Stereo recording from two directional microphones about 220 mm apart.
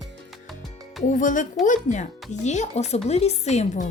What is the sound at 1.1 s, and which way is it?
Speech, 35° left (ahead or behind).